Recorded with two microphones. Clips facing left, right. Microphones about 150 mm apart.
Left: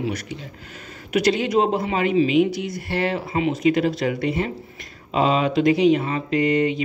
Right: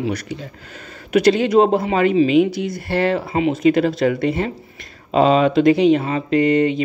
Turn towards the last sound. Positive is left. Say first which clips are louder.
# right 4 dB
turn(degrees=-30)  # may be behind; listen again after turning